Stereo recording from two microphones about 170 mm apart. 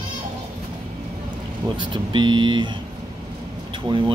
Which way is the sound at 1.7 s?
25° right (ahead or behind).